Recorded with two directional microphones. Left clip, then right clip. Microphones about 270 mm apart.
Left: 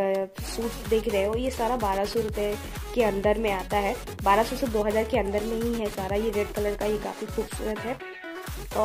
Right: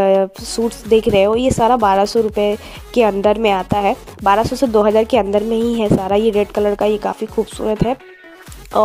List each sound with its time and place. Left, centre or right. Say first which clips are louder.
0.0 s music: right 13 dB; right
0.9 s speech: right 13 dB; right